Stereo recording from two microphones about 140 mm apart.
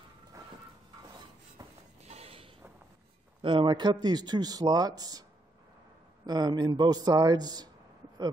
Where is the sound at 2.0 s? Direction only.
45° right (ahead or behind).